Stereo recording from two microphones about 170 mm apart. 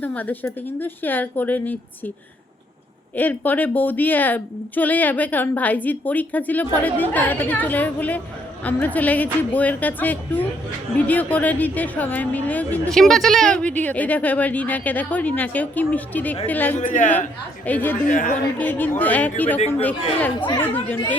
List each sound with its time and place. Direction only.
0.0 s a woman's voice: 10° left (ahead or behind)
3.2 s a woman's voice: 10° left (ahead or behind)
16.7 s a woman's voice: 45° left (ahead or behind)
17.7 s a woman's voice: 10° left (ahead or behind)
18.1 s a woman's voice: 50° left (ahead or behind)
18.6 s a woman's voice: 10° left (ahead or behind)